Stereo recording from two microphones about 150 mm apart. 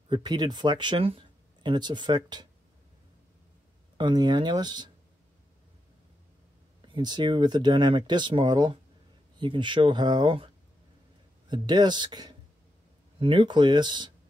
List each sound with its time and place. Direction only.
0.1 s speech: 30° right (ahead or behind)
4.0 s speech: 30° right (ahead or behind)
6.9 s speech: 30° right (ahead or behind)